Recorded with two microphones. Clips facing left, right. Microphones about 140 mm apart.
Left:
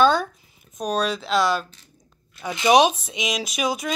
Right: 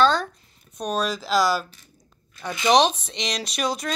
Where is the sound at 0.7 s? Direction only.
Centre (ahead or behind).